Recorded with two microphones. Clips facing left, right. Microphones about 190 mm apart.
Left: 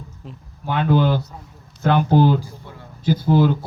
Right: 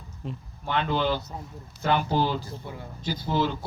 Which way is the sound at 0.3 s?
10° left (ahead or behind).